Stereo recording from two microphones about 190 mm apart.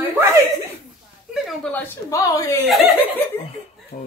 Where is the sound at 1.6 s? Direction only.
10° left (ahead or behind).